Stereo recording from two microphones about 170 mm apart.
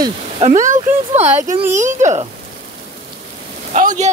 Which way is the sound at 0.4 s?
45° right (ahead or behind).